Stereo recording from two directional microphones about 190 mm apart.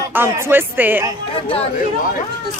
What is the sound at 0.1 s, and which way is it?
Speech, 10° right (ahead or behind).